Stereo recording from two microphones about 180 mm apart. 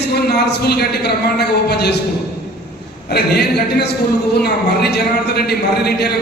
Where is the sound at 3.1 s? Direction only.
60° left (ahead or behind).